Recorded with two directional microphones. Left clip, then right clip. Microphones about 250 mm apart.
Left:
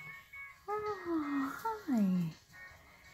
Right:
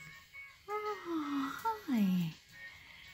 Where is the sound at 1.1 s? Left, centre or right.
Centre.